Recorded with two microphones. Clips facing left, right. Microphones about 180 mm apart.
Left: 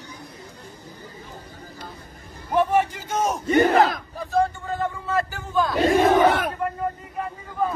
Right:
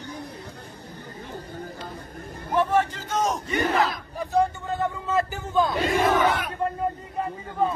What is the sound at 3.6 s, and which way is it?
Battle cry, 50° left (ahead or behind).